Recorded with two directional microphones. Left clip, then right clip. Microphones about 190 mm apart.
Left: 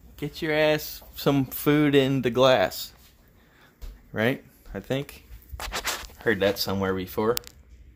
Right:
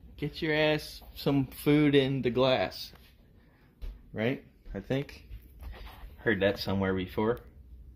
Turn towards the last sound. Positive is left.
turn(degrees=10)  # may be behind; listen again after turning